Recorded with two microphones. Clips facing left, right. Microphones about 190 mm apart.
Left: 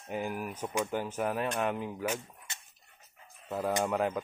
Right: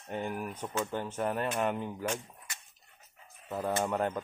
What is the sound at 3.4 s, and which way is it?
Speech, 10° left (ahead or behind).